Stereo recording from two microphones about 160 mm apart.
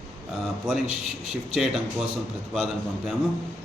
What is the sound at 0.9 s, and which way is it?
Speech, 40° left (ahead or behind).